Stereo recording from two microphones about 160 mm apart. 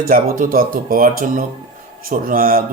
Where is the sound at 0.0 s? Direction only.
60° right (ahead or behind).